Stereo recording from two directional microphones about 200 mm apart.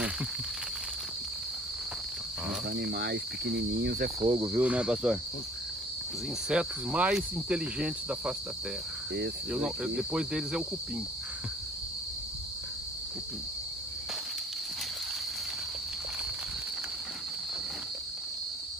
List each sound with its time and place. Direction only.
2.7 s speech: 55° right (ahead or behind)
4.2 s cricket: 20° right (ahead or behind)
4.6 s cricket: 5° right (ahead or behind)
6.5 s cricket: 5° right (ahead or behind)
9.5 s cricket: 5° right (ahead or behind)